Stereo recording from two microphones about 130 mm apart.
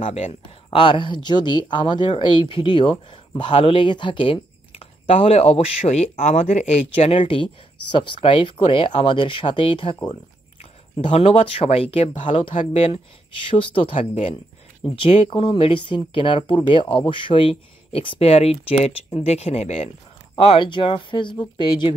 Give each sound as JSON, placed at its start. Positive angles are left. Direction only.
{"t": 0.0, "sound": "speech", "side_deg": 50}
{"t": 0.7, "sound": "speech", "side_deg": 40}
{"t": 11.0, "sound": "speech", "side_deg": 45}
{"t": 20.3, "sound": "speech", "side_deg": 40}